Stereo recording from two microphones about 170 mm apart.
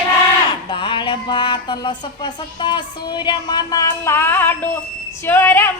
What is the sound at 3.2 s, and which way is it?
Music, 25° left (ahead or behind).